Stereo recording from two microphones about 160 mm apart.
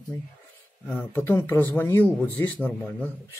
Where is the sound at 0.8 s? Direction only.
10° left (ahead or behind).